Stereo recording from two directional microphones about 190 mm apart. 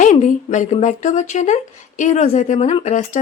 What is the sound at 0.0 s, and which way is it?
Speech, 40° left (ahead or behind).